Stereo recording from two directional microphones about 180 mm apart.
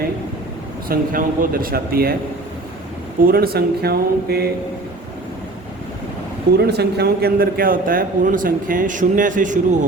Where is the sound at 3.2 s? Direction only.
55° right (ahead or behind).